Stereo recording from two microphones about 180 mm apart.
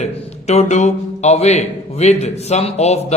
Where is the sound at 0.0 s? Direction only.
40° left (ahead or behind).